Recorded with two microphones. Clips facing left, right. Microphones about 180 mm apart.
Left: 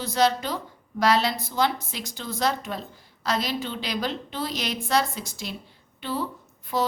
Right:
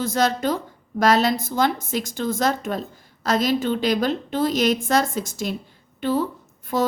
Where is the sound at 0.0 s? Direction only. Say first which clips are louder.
Right 2 dB; 45° right (ahead or behind).